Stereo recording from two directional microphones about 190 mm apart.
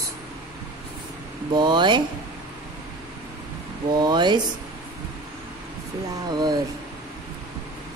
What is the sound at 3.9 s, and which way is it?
Speech, 20° right (ahead or behind).